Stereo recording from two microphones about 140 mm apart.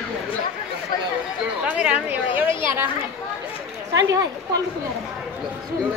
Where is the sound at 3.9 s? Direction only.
25° right (ahead or behind).